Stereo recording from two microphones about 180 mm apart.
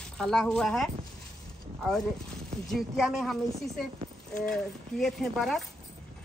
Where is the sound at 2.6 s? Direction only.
Centre (ahead or behind).